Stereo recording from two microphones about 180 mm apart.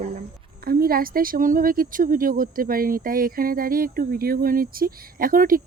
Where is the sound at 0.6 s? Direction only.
55° right (ahead or behind).